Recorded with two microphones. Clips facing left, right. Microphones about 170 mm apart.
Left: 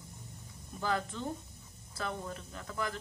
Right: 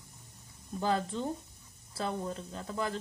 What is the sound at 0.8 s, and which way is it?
Speech, 30° right (ahead or behind).